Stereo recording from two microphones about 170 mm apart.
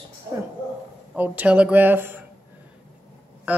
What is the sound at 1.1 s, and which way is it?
Speech, 10° right (ahead or behind).